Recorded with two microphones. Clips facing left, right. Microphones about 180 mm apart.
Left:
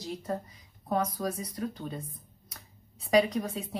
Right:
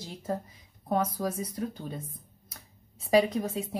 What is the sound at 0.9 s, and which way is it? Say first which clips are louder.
Speech: right 1 dB; 25° right (ahead or behind).